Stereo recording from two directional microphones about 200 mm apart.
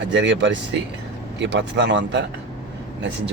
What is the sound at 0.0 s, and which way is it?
Speech, 65° right (ahead or behind).